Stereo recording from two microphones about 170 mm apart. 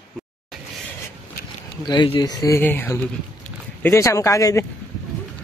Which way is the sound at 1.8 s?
25° left (ahead or behind).